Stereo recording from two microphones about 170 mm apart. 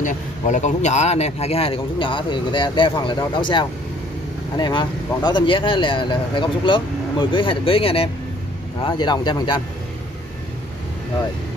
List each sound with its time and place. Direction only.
0.0 s speech: 45° left (ahead or behind); by 9.6 s 25° left (ahead or behind)